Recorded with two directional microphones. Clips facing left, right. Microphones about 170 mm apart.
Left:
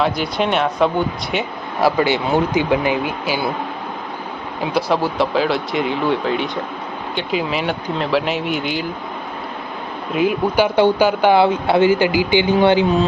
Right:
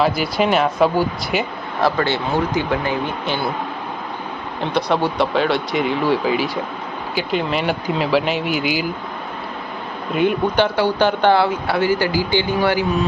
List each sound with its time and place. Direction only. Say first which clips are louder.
0.0 s speech: right 1 dB; centre (ahead or behind)
1.8 s speech: left 2 dB; 10° left (ahead or behind)
4.6 s speech: even; 5° left (ahead or behind)
10.2 s speech: left 1 dB; 5° left (ahead or behind); by 12.8 s 20° left (ahead or behind)